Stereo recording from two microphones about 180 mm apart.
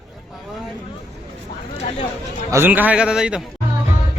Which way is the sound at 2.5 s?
10° right (ahead or behind).